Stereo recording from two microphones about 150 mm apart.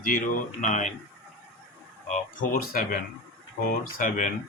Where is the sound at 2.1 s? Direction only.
70° left (ahead or behind).